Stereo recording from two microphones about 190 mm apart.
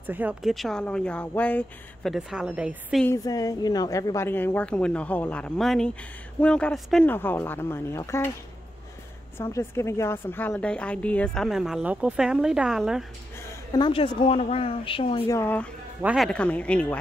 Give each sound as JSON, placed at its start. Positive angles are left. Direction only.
{"t": 0.0, "sound": "speech", "side_deg": -10}
{"t": 2.1, "sound": "speech", "side_deg": -5}
{"t": 3.3, "sound": "a woman's voice", "side_deg": 20}
{"t": 9.4, "sound": "speech", "side_deg": 15}
{"t": 13.5, "sound": "speech", "side_deg": 25}
{"t": 15.2, "sound": "a woman's voice", "side_deg": 15}
{"t": 16.0, "sound": "speech", "side_deg": -5}
{"t": 16.3, "sound": "a woman's voice", "side_deg": 5}